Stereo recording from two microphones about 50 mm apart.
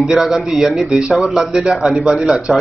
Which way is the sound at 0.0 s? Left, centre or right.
Centre.